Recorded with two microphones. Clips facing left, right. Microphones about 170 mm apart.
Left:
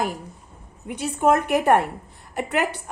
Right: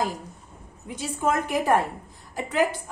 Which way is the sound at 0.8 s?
60° left (ahead or behind).